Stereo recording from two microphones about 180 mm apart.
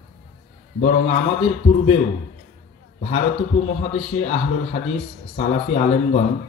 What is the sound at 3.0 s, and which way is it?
A man's voice, 35° left (ahead or behind).